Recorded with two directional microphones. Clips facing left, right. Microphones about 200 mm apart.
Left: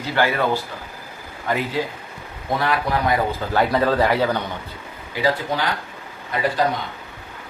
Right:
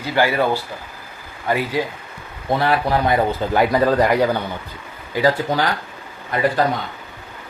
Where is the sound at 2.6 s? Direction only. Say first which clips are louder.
Right 3 dB; 30° right (ahead or behind).